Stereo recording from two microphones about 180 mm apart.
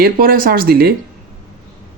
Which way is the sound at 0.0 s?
55° right (ahead or behind).